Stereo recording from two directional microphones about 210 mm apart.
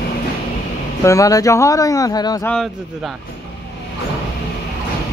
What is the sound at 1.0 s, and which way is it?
Speech, 15° left (ahead or behind).